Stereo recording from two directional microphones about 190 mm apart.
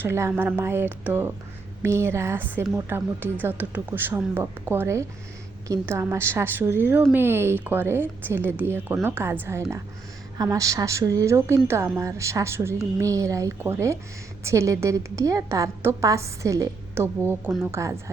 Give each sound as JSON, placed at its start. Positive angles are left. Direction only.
{"t": 0.0, "sound": "a woman's voice", "side_deg": -15}